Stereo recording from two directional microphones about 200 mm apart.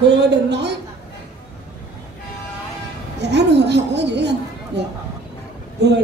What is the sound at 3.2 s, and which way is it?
A woman's voice, 60° right (ahead or behind).